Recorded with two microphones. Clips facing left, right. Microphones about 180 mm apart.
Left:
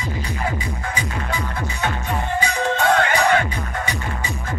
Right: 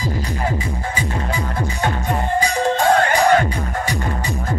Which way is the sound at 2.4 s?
40° right (ahead or behind).